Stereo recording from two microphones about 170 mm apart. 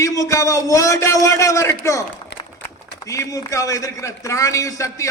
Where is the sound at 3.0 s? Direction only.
20° left (ahead or behind).